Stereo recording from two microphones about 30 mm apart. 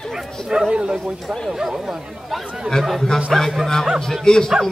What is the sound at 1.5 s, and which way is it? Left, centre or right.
Speech, centre.